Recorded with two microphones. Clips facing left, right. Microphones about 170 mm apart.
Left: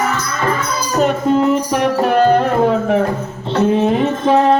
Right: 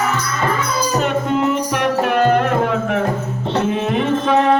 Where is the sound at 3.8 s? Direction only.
30° left (ahead or behind).